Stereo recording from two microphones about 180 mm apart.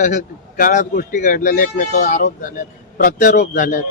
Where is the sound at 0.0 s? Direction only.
50° left (ahead or behind).